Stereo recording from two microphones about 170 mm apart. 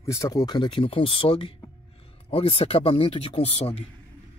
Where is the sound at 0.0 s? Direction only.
20° left (ahead or behind); by 3.8 s 35° left (ahead or behind).